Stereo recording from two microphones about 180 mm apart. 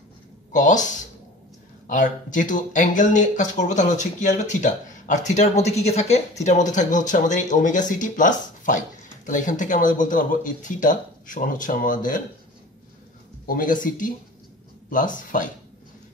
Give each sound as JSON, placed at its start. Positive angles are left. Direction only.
{"t": 0.5, "sound": "speech", "side_deg": 45}
{"t": 13.5, "sound": "speech", "side_deg": 45}